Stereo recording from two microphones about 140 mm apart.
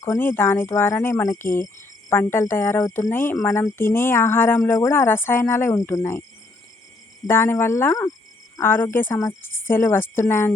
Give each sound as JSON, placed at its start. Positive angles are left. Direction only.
{"t": 0.0, "sound": "speech", "side_deg": 15}
{"t": 7.3, "sound": "speech", "side_deg": 15}